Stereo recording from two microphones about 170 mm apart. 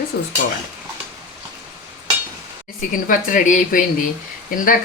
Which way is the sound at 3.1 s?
50° left (ahead or behind).